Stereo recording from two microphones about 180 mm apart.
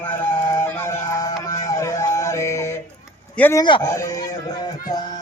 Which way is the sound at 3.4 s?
10° left (ahead or behind).